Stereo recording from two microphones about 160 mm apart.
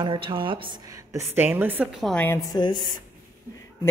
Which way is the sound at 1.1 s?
15° right (ahead or behind).